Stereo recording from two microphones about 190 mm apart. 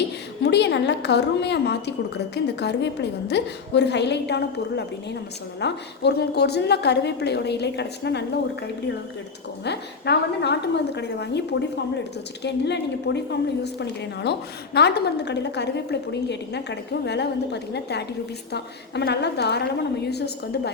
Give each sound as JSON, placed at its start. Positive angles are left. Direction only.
{"t": 0.4, "sound": "a woman's voice", "side_deg": 60}
{"t": 9.6, "sound": "a woman's voice", "side_deg": 60}